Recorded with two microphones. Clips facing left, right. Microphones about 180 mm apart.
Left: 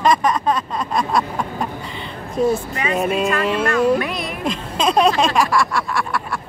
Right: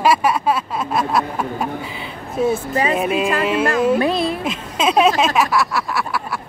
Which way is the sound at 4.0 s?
30° right (ahead or behind).